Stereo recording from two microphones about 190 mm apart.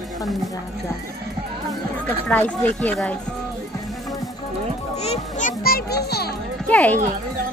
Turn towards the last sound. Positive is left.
turn(degrees=10)  # may be behind; listen again after turning